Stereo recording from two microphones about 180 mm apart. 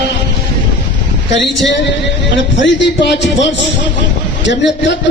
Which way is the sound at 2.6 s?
75° left (ahead or behind).